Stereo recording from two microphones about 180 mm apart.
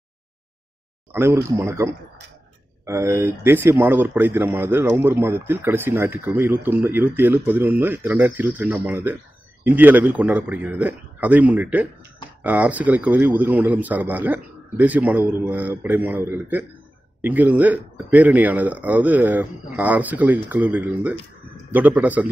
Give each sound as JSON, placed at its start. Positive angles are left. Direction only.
{"t": 1.1, "sound": "speech", "side_deg": -15}